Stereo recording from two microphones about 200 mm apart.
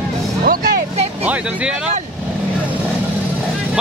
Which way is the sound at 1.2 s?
5° right (ahead or behind).